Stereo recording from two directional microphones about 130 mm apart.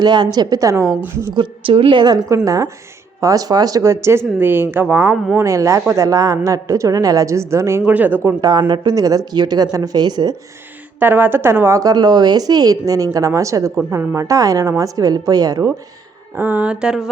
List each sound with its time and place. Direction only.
0.0 s a woman's voice: 35° right (ahead or behind)
1.4 s a woman's voice: 45° right (ahead or behind)
2.3 s a woman's voice: 25° right (ahead or behind)
11.0 s a woman's voice: 15° right (ahead or behind)
16.3 s speech: 15° right (ahead or behind)